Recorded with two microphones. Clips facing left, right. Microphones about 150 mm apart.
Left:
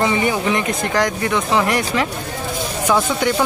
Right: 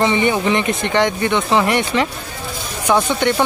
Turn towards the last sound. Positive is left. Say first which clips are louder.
# right 1 dB
turn(degrees=0)  # may be behind; listen again after turning